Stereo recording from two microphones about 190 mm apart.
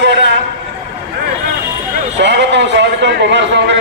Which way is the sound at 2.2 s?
65° right (ahead or behind).